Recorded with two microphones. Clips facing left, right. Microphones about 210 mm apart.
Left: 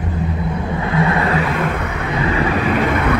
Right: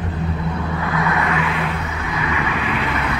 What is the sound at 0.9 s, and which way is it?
Vehicle, 30° left (ahead or behind).